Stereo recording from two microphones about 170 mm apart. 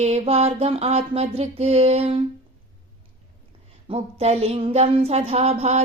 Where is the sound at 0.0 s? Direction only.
40° right (ahead or behind).